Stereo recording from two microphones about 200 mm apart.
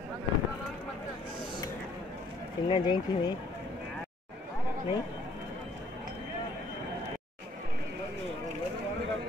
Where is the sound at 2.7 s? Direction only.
25° left (ahead or behind).